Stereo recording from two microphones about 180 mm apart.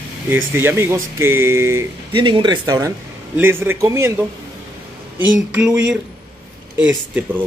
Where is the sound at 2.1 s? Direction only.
25° right (ahead or behind).